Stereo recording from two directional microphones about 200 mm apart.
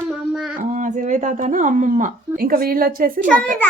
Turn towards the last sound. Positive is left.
turn(degrees=-45)  # may be behind; listen again after turning